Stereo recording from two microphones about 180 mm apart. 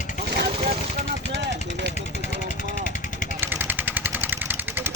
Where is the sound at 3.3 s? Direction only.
10° right (ahead or behind).